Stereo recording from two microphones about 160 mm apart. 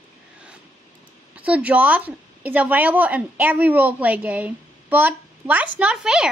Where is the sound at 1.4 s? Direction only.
10° right (ahead or behind).